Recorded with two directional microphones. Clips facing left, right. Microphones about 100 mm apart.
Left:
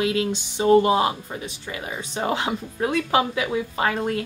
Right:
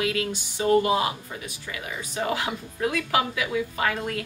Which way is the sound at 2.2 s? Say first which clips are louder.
Left 3 dB; 30° left (ahead or behind).